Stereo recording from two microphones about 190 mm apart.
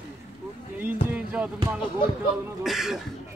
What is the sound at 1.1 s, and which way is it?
Speech, 5° right (ahead or behind).